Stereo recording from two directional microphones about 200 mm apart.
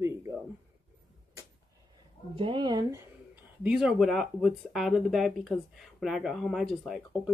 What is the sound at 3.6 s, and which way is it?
Speech, 5° right (ahead or behind).